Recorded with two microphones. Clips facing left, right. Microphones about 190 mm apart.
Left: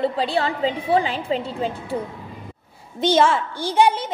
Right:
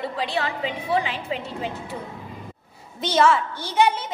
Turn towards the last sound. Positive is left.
turn(degrees=30)  # may be behind; listen again after turning